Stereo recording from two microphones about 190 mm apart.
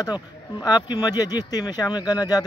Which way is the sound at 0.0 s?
20° left (ahead or behind).